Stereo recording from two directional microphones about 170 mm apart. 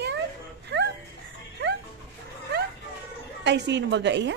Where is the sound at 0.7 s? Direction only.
90° right.